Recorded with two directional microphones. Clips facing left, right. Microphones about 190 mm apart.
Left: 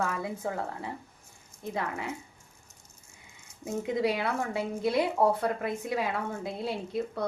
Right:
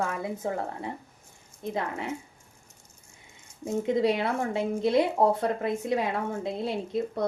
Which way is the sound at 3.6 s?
25° right (ahead or behind).